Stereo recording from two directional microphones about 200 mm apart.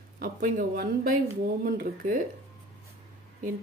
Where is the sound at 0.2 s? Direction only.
45° right (ahead or behind).